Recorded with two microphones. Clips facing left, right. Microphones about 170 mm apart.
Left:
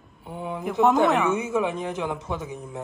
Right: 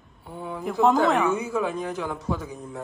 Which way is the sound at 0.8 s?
Centre (ahead or behind).